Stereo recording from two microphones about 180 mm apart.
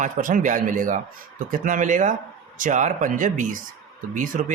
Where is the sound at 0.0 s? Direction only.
45° right (ahead or behind).